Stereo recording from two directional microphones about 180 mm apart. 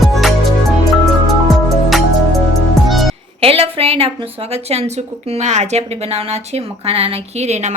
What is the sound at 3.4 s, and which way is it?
A woman's voice, 30° right (ahead or behind).